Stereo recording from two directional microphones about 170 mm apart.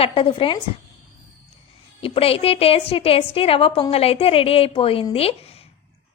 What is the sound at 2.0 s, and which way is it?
A woman's voice, 35° left (ahead or behind).